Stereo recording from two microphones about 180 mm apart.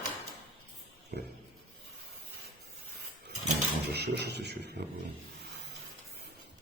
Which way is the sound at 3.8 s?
65° right (ahead or behind).